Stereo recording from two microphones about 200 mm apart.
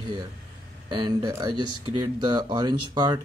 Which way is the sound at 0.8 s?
20° right (ahead or behind).